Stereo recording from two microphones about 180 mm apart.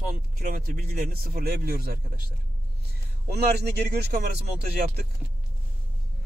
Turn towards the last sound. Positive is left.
turn(degrees=-60)  # may be behind; listen again after turning